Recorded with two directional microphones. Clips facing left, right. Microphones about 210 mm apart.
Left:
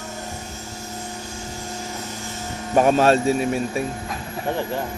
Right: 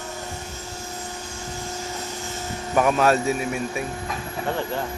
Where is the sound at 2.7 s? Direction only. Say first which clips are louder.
Left 3 dB; 30° left (ahead or behind).